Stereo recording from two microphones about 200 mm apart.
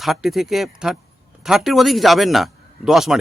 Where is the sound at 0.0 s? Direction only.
Centre (ahead or behind).